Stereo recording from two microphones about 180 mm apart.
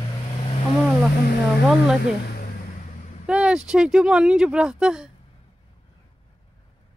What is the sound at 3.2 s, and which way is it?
Speech, 5° right (ahead or behind).